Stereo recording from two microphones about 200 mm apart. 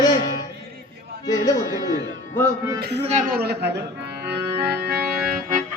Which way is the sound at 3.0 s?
35° right (ahead or behind).